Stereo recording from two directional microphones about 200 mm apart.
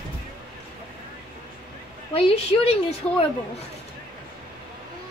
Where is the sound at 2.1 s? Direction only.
30° left (ahead or behind).